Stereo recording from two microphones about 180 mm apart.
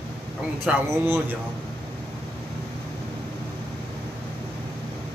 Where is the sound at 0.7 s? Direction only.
10° right (ahead or behind).